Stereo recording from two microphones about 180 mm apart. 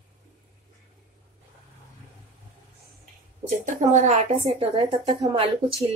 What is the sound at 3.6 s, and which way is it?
A woman's voice, 40° right (ahead or behind).